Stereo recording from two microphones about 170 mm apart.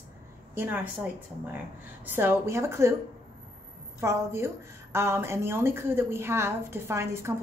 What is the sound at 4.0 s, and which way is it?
A woman's voice, 15° right (ahead or behind).